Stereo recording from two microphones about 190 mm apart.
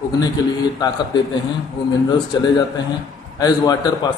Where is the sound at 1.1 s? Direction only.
20° left (ahead or behind).